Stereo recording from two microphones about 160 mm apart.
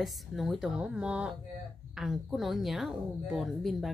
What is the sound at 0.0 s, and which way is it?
A woman's voice, centre (ahead or behind).